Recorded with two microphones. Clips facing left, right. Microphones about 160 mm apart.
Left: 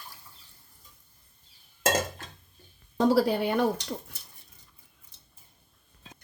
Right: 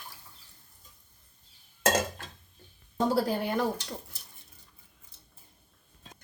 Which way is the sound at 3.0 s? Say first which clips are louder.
Left 4 dB; 65° left (ahead or behind).